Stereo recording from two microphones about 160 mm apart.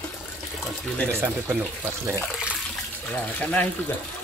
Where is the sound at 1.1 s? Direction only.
15° right (ahead or behind).